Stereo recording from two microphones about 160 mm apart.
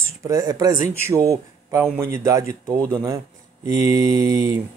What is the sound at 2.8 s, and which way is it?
Speech, 5° left (ahead or behind).